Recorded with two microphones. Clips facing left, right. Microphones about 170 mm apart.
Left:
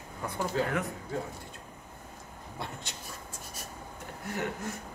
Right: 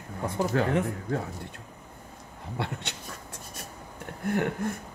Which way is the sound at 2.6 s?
70° right (ahead or behind).